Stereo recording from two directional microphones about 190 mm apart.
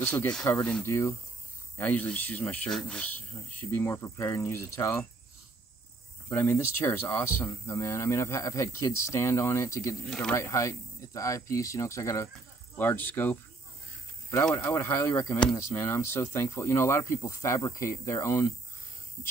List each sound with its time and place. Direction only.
0.0 s speech: 10° left (ahead or behind)
6.2 s speech: 10° left (ahead or behind)